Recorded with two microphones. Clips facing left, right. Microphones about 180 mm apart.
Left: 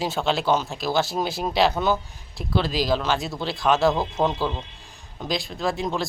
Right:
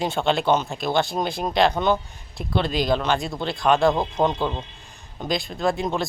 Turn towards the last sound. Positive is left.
turn(degrees=0)  # may be behind; listen again after turning